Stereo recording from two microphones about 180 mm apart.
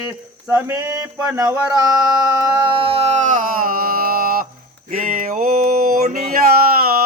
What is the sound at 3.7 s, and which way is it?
Mantra, 50° right (ahead or behind).